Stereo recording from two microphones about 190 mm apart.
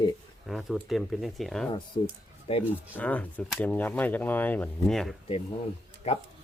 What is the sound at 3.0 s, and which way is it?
Speech, 10° left (ahead or behind).